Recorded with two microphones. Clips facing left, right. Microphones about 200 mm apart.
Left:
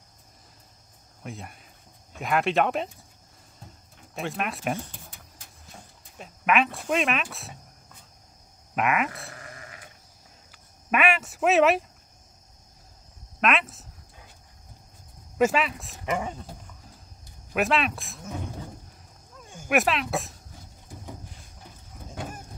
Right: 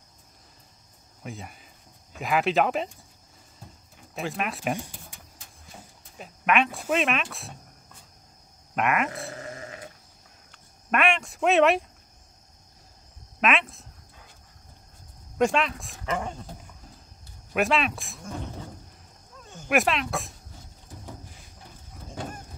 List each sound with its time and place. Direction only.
1.2 s speech: centre (ahead or behind)
3.6 s a sound: centre (ahead or behind)
4.7 s a sound: 10° right (ahead or behind)
5.4 s a sound: centre (ahead or behind)
8.7 s speech: centre (ahead or behind)
9.1 s sheep: 30° right (ahead or behind)
10.5 s speech: 5° left (ahead or behind)
13.4 s speech: centre (ahead or behind)
15.3 s speech: 5° left (ahead or behind)
17.5 s speech: centre (ahead or behind)
19.5 s speech: 5° left (ahead or behind)
22.1 s honk: 5° left (ahead or behind)